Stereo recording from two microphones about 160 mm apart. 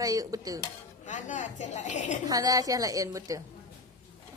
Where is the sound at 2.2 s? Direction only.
20° right (ahead or behind).